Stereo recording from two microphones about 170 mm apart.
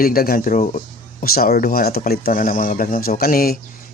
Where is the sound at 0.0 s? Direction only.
60° left (ahead or behind).